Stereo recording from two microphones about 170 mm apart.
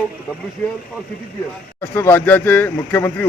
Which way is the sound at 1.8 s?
10° left (ahead or behind).